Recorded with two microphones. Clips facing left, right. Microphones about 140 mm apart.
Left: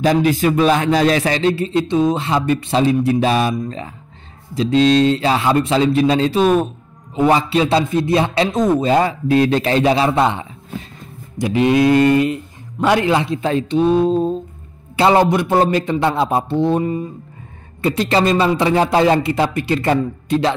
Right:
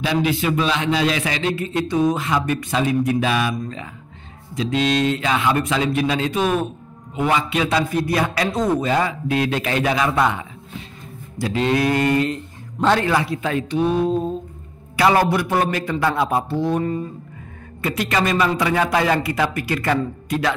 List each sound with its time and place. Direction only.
0.0 s a man's voice: 45° left (ahead or behind); by 20.5 s 30° left (ahead or behind)